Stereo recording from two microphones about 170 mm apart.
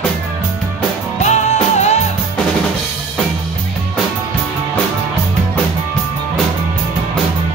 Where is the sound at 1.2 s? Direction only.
40° left (ahead or behind).